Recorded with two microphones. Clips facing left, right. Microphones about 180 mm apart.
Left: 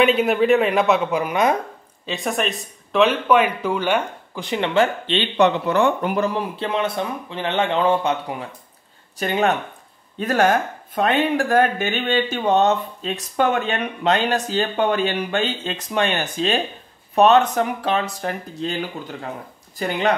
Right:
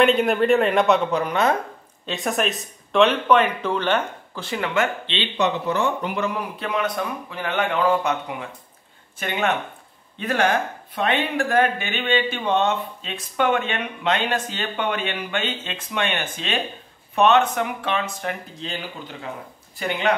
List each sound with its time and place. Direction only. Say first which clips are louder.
0.0 s speech: left 1 dB; centre (ahead or behind)
2.0 s speech: even; centre (ahead or behind); by 4.8 s 25° left (ahead or behind)
5.0 s speech: left 5 dB; 50° left (ahead or behind)
6.1 s speech: left 4 dB; 35° left (ahead or behind)